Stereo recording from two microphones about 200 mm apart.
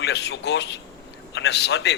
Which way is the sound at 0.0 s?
55° left (ahead or behind).